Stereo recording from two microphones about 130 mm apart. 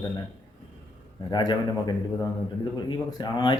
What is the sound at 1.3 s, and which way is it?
Speech, 35° left (ahead or behind).